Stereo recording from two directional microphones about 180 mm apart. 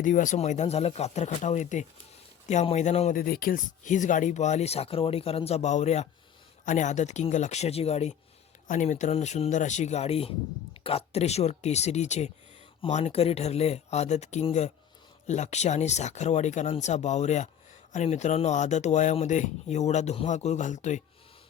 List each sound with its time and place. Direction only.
0.0 s speech: 45° left (ahead or behind)
3.2 s speech: 55° left (ahead or behind)